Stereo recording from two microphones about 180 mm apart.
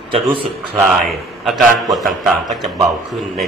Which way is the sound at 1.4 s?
Centre (ahead or behind).